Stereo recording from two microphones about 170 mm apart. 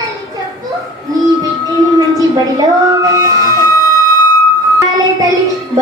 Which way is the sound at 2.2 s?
20° right (ahead or behind).